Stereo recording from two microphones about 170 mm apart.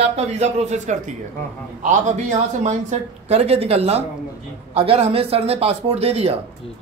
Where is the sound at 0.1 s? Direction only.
40° right (ahead or behind).